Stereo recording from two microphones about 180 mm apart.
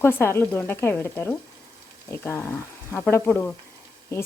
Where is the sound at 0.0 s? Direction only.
15° left (ahead or behind).